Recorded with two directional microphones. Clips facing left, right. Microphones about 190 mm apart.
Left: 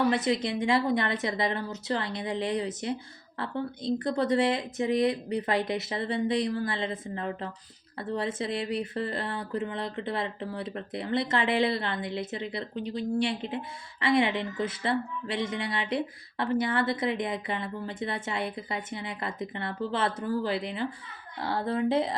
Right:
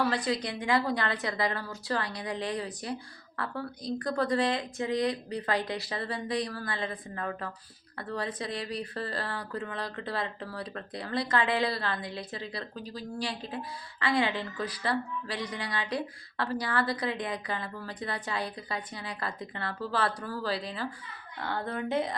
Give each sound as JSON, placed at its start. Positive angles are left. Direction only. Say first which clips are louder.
{"t": 0.0, "sound": "speech", "louder": "left 4 dB", "side_deg": 20}